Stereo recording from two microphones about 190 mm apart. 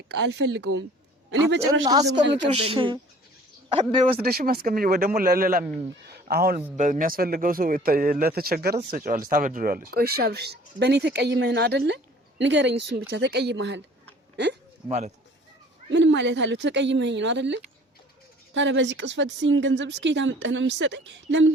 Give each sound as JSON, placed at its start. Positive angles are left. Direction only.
{"t": 0.1, "sound": "speech", "side_deg": -65}
{"t": 2.6, "sound": "a man's voice", "side_deg": -25}
{"t": 4.2, "sound": "speech", "side_deg": -55}
{"t": 6.1, "sound": "a sound", "side_deg": -55}
{"t": 6.7, "sound": "speech", "side_deg": -40}
{"t": 14.8, "sound": "speech", "side_deg": -35}
{"t": 15.9, "sound": "speech", "side_deg": -65}